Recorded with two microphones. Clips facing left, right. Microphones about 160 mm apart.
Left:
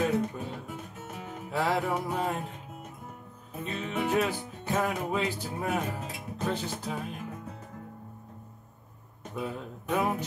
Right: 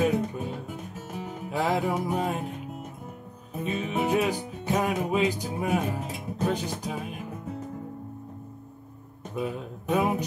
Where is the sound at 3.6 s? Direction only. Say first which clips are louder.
Right 4 dB; 20° right (ahead or behind).